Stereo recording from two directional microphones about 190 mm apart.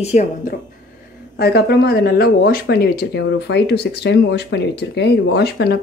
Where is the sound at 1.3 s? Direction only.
55° left (ahead or behind).